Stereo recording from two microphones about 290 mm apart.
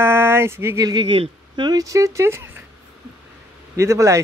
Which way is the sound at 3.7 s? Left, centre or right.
Centre.